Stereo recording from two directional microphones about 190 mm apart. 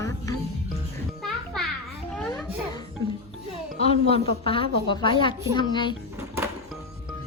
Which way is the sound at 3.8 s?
30° left (ahead or behind).